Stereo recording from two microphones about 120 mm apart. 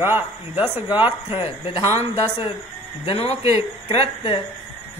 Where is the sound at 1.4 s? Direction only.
45° left (ahead or behind).